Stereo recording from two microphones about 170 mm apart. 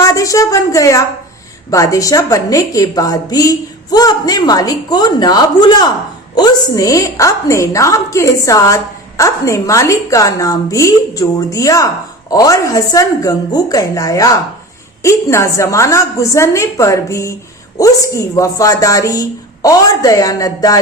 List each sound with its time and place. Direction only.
0.0 s a woman's voice: 20° left (ahead or behind)